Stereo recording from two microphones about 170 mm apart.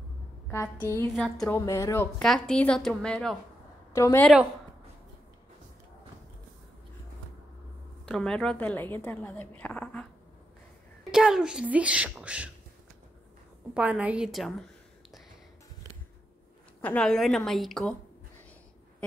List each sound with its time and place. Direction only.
0.5 s a woman's voice: 15° left (ahead or behind)
1.1 s a child's voice: centre (ahead or behind)
1.5 s a woman's voice: 15° left (ahead or behind)
2.1 s a child's voice: 5° left (ahead or behind)
3.9 s a woman's voice: 15° left (ahead or behind)
8.0 s a woman's voice: 5° left (ahead or behind)
11.1 s a child's voice: 5° right (ahead or behind)
13.7 s a child's voice: 10° right (ahead or behind)
16.8 s a child's voice: 5° left (ahead or behind)